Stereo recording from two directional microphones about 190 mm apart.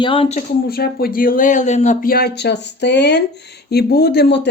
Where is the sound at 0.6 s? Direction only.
55° left (ahead or behind).